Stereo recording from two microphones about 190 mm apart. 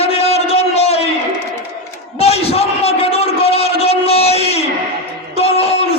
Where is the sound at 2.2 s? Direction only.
30° left (ahead or behind).